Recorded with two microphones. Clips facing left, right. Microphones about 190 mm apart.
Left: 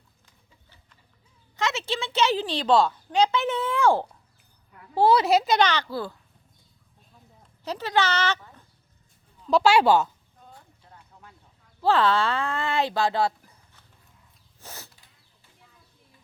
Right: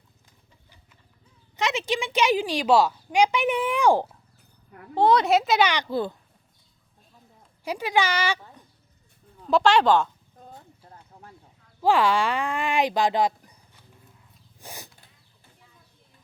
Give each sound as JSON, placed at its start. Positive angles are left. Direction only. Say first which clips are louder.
{"t": 1.5, "sound": "a woman's voice", "louder": "right 2 dB", "side_deg": -15}
{"t": 4.9, "sound": "a woman's voice", "louder": "even", "side_deg": 5}
{"t": 7.6, "sound": "speech", "louder": "right 1 dB", "side_deg": -10}
{"t": 9.5, "sound": "speech", "louder": "even", "side_deg": 5}
{"t": 10.8, "sound": "a sound", "louder": "right 3 dB", "side_deg": -35}
{"t": 11.8, "sound": "speech", "louder": "right 1 dB", "side_deg": -10}